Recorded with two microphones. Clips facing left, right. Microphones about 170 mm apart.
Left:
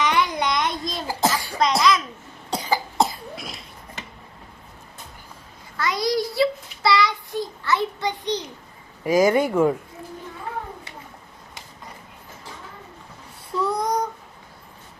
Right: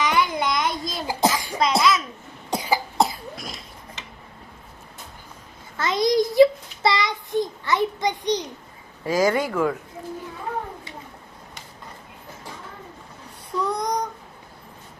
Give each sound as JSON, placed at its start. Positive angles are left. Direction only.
{"t": 0.0, "sound": "a sound", "side_deg": 0}
{"t": 1.0, "sound": "a sound", "side_deg": -15}
{"t": 1.5, "sound": "cough", "side_deg": 0}
{"t": 3.0, "sound": "cough", "side_deg": 0}
{"t": 5.7, "sound": "child singing", "side_deg": -20}
{"t": 9.0, "sound": "speech", "side_deg": 20}
{"t": 13.6, "sound": "child singing", "side_deg": 5}